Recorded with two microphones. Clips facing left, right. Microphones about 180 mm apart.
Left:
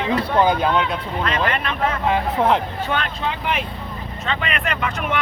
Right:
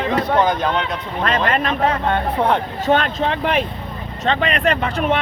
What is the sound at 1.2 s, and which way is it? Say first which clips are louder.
Speech: right 5 dB; 45° right (ahead or behind).